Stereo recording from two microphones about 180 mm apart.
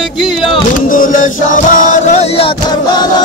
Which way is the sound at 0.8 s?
50° left (ahead or behind).